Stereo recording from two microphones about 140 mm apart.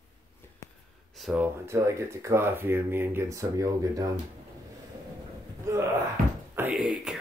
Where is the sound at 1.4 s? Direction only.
20° right (ahead or behind).